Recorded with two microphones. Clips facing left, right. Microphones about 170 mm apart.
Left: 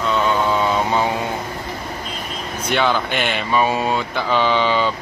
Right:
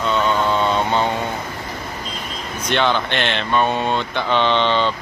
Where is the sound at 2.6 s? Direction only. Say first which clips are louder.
Even; 5° left (ahead or behind).